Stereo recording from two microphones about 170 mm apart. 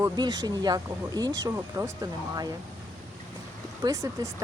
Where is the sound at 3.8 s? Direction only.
20° right (ahead or behind).